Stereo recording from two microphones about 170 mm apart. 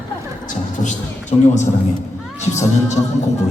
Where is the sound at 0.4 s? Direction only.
50° left (ahead or behind).